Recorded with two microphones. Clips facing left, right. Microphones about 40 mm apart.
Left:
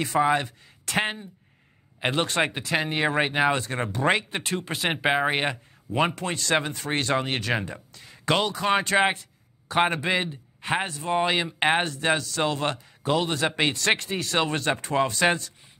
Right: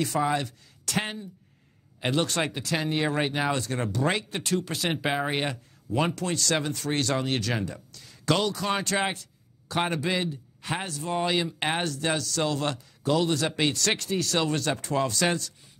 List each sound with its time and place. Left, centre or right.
0.0 s speech: left